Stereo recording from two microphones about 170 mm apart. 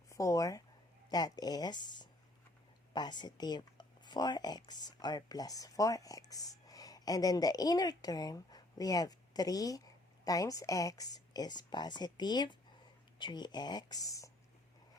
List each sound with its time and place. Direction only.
0.1 s speech: 20° left (ahead or behind)